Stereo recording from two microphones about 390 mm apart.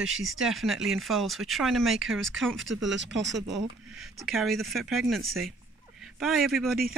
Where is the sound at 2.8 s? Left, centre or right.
Right.